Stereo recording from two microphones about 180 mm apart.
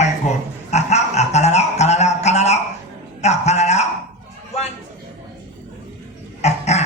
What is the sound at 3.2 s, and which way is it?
Music, 40° left (ahead or behind).